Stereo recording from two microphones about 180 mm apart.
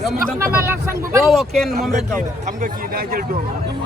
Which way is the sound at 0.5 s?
15° right (ahead or behind).